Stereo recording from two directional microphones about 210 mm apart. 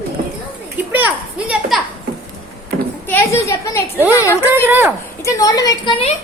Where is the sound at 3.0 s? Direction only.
10° left (ahead or behind).